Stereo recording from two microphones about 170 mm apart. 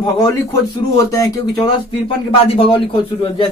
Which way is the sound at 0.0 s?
20° left (ahead or behind).